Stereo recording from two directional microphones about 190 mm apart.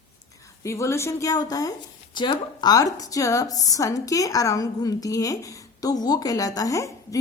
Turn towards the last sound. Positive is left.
turn(degrees=15)  # may be behind; listen again after turning